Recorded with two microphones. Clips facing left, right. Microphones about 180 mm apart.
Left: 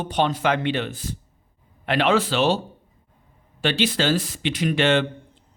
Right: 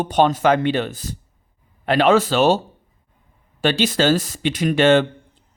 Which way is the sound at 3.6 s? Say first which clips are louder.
Right 4 dB; 45° right (ahead or behind).